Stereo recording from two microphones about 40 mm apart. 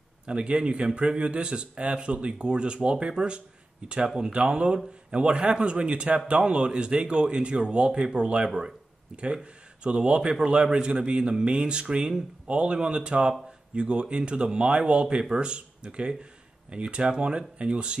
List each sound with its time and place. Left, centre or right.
0.3 s speech: right